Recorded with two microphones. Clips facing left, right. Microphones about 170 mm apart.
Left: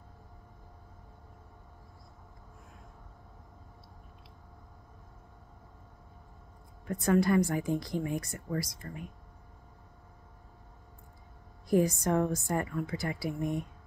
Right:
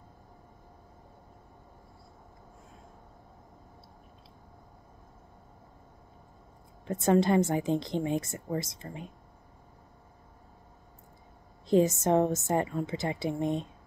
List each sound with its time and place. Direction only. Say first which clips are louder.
6.9 s a woman's voice: right 2 dB; 25° right (ahead or behind)
11.6 s a woman's voice: right 3 dB; 20° right (ahead or behind)